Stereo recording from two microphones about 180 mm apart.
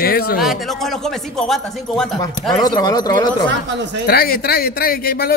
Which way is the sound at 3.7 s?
75° right (ahead or behind).